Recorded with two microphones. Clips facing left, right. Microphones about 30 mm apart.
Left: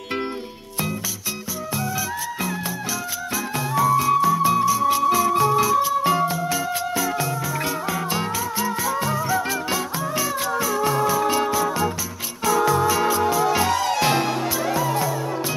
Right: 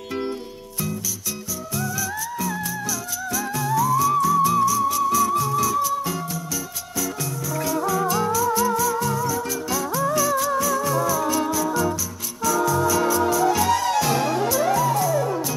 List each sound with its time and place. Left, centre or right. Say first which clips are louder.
3.5 s music: left 1 dB; left